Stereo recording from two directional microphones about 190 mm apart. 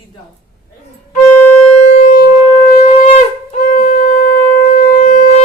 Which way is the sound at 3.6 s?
50° left (ahead or behind).